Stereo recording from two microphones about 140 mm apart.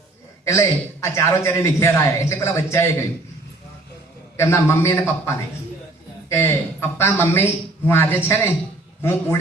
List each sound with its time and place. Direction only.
0.4 s a man's voice: 20° left (ahead or behind)
4.4 s a man's voice: 20° left (ahead or behind)